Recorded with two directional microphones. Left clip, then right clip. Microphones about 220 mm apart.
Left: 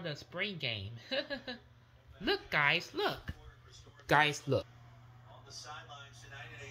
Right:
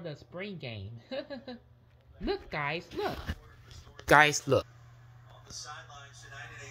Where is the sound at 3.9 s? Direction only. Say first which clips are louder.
Right 7 dB; 30° right (ahead or behind).